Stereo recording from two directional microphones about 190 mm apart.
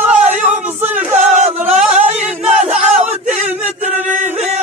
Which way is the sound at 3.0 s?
40° right (ahead or behind).